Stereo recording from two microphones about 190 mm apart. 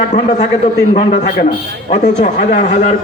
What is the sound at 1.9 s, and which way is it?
Speech, 40° left (ahead or behind).